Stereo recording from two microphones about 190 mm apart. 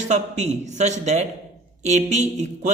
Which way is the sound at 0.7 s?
35° right (ahead or behind).